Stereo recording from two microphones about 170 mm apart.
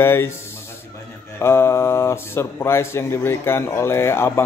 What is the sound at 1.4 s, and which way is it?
Speech, 15° left (ahead or behind).